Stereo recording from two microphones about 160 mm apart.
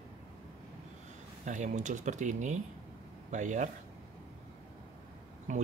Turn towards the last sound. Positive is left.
turn(degrees=-50)  # may be behind; listen again after turning